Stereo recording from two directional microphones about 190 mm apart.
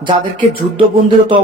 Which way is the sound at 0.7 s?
25° right (ahead or behind).